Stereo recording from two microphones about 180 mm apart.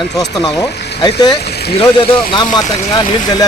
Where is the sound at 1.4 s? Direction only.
65° left (ahead or behind).